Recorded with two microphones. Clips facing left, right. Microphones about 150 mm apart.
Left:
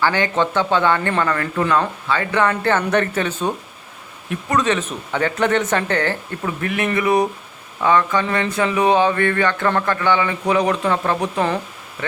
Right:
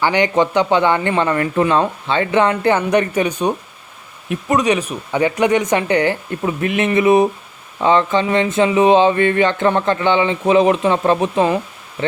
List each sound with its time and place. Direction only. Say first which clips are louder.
0.0 s speech: right 3 dB; 15° right (ahead or behind)